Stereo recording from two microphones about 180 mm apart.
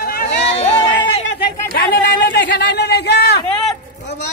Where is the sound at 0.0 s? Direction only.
55° left (ahead or behind).